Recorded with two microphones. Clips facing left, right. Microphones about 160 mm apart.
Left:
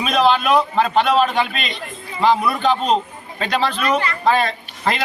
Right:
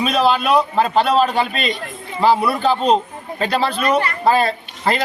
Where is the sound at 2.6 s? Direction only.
35° right (ahead or behind).